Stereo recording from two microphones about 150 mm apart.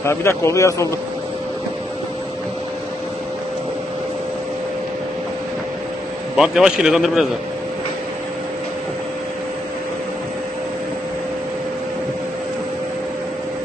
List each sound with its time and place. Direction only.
0.0 s a man's voice: 15° left (ahead or behind)
6.3 s a man's voice: 5° right (ahead or behind)